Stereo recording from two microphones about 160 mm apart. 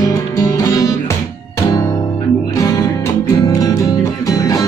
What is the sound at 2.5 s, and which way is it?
Music, 20° left (ahead or behind).